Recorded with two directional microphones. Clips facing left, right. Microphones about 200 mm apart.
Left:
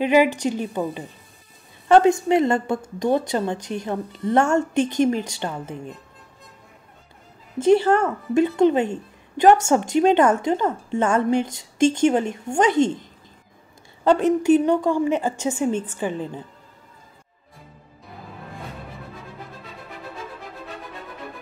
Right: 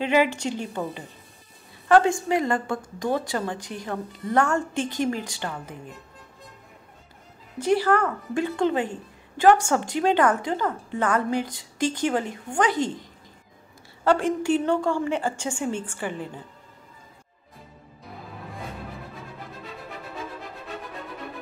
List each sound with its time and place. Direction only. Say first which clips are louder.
0.0 s a woman's voice: left 4 dB; 15° left (ahead or behind)
7.5 s speech: left 5 dB; 25° left (ahead or behind)
14.0 s speech: left 5 dB; 20° left (ahead or behind)